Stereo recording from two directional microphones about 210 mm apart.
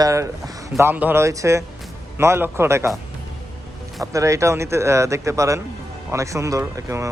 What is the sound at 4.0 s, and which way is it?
Speech, 15° right (ahead or behind).